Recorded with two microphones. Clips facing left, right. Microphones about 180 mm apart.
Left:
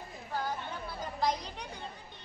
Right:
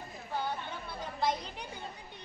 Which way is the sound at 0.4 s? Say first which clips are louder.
Left 1 dB; centre (ahead or behind).